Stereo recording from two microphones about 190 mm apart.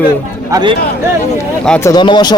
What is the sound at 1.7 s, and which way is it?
Speech, 10° left (ahead or behind).